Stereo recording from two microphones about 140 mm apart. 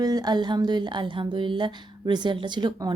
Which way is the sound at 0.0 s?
25° right (ahead or behind).